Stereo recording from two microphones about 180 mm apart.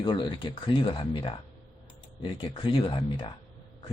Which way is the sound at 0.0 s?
30° left (ahead or behind).